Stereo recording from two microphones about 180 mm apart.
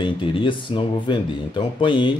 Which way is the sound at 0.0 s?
30° left (ahead or behind).